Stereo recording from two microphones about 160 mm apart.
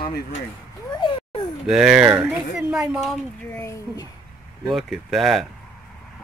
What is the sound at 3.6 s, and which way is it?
Speech, 20° left (ahead or behind).